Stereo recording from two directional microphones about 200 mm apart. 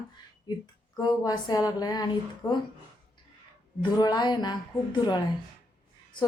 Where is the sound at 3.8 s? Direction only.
20° left (ahead or behind).